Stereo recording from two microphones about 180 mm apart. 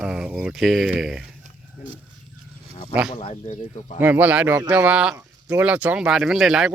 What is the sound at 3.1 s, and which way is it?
Speech, 40° left (ahead or behind).